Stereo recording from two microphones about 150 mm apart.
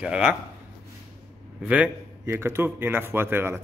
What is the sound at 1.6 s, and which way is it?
Speech, 10° right (ahead or behind).